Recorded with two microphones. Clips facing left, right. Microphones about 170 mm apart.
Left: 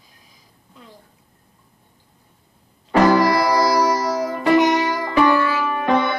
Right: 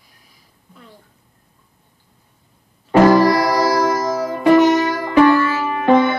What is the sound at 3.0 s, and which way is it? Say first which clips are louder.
Music: right 3 dB; 10° right (ahead or behind).